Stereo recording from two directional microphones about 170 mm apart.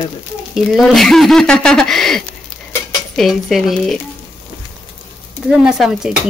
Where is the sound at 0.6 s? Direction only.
Centre (ahead or behind).